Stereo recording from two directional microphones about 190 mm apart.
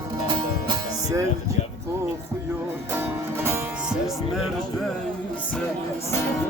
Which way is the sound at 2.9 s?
10° right (ahead or behind).